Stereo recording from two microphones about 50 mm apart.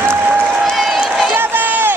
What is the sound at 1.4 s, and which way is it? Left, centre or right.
Run, right.